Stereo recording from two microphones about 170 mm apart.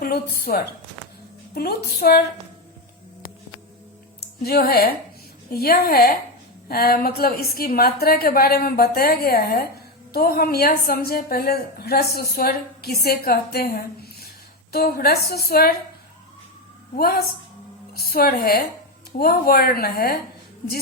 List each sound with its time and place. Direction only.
0.0 s a woman's voice: 60° left (ahead or behind)
4.2 s a woman's voice: 65° left (ahead or behind)
17.9 s a woman's voice: 65° left (ahead or behind)